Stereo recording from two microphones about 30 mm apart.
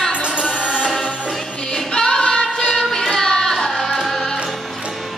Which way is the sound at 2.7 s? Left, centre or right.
Centre.